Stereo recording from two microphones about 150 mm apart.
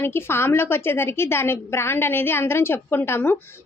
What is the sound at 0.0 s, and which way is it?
A woman's voice, 15° left (ahead or behind).